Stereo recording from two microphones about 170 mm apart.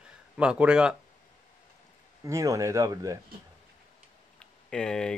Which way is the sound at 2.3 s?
20° right (ahead or behind).